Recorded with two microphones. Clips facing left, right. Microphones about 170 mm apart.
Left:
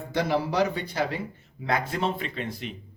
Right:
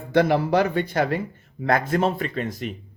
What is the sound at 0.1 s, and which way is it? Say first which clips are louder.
A man's voice: right 7 dB; 55° right (ahead or behind).